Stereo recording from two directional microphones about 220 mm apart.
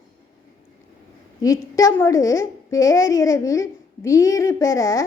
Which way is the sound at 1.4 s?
15° left (ahead or behind).